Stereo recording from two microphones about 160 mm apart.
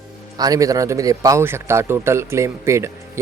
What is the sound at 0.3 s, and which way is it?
Speech, 20° right (ahead or behind).